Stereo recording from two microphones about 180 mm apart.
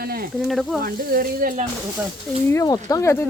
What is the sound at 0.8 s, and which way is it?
Speech, 55° right (ahead or behind).